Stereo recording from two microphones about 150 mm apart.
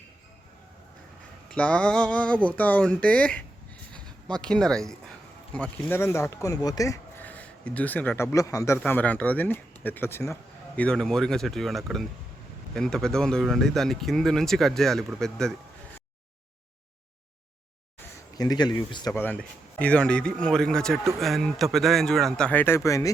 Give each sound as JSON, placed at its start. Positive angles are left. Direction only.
{"t": 1.5, "sound": "speech", "side_deg": 5}
{"t": 7.3, "sound": "a man's voice", "side_deg": 10}
{"t": 18.3, "sound": "speech", "side_deg": 25}
{"t": 19.1, "sound": "speech", "side_deg": 10}